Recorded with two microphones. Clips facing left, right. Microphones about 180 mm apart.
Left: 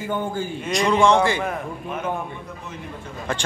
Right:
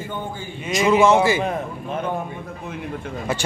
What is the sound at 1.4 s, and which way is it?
Speech, 25° right (ahead or behind).